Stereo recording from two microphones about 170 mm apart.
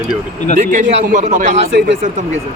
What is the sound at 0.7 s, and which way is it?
A man's voice, 45° right (ahead or behind).